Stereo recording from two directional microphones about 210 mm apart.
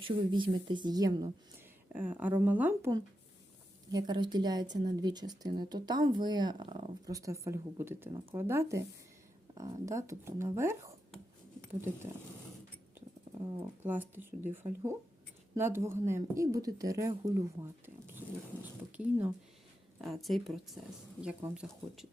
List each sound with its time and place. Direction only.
0.0 s a woman's voice: 25° right (ahead or behind)
3.9 s a woman's voice: 20° right (ahead or behind)
13.8 s speech: 10° right (ahead or behind)
18.6 s a sound: 10° right (ahead or behind)
20.0 s speech: centre (ahead or behind)